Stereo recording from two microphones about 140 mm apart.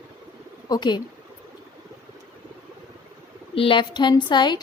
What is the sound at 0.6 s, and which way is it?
Speech, 30° left (ahead or behind).